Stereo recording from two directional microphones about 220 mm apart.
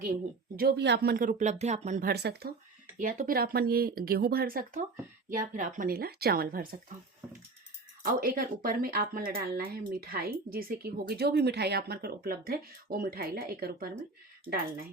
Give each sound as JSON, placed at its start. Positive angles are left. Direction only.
{"t": 0.5, "sound": "speech", "side_deg": -45}
{"t": 3.0, "sound": "a woman's voice", "side_deg": -35}
{"t": 8.0, "sound": "a woman's voice", "side_deg": -40}